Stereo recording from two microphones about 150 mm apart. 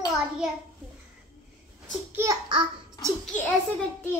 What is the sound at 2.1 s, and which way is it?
Babbling, 15° right (ahead or behind).